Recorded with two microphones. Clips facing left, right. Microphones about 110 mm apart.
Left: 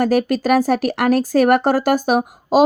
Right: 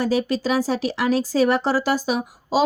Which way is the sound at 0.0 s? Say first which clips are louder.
Left 5 dB; 60° left (ahead or behind).